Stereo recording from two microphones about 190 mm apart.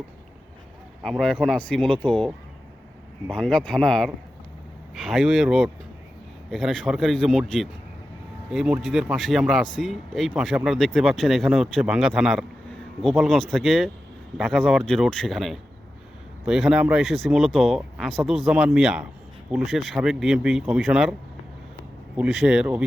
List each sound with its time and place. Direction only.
1.0 s speech: centre (ahead or behind)
22.2 s speech: 5° right (ahead or behind)